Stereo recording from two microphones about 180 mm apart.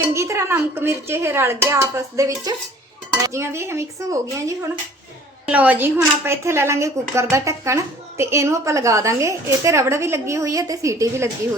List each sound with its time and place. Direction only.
0.1 s a woman's voice: 15° right (ahead or behind)